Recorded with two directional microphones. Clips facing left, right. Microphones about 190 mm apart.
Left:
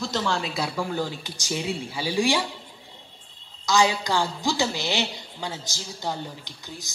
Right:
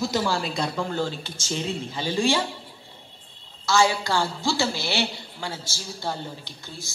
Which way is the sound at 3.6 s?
15° left (ahead or behind).